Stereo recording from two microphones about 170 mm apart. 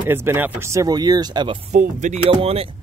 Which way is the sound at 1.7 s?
45° right (ahead or behind).